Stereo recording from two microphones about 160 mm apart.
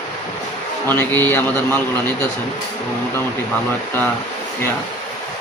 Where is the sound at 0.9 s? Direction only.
10° left (ahead or behind).